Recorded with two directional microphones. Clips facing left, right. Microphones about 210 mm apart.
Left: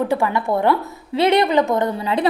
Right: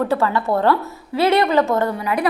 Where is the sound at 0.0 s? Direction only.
15° left (ahead or behind).